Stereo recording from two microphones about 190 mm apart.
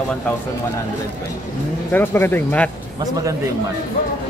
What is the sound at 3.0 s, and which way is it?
Speech, 20° right (ahead or behind).